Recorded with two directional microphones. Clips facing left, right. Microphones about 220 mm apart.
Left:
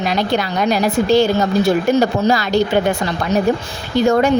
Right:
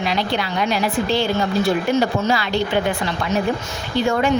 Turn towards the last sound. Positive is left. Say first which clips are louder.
# left 4 dB
turn(degrees=45)  # may be behind; listen again after turning